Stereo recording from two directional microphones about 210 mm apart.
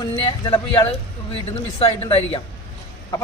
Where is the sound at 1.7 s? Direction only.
25° left (ahead or behind).